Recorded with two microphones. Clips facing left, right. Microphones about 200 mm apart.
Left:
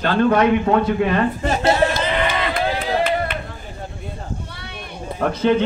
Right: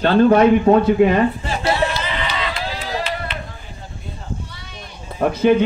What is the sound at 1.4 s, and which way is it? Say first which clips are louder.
Run: left 3 dB; 45° left (ahead or behind).